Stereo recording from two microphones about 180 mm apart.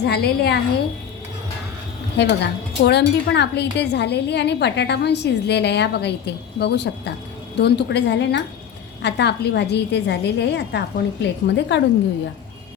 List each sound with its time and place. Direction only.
0.0 s a woman's voice: 65° left (ahead or behind)
2.1 s speech: 70° left (ahead or behind)